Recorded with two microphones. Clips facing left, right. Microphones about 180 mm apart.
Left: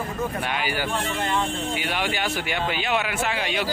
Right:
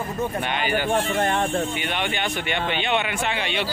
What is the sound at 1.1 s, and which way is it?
Speech, 55° right (ahead or behind).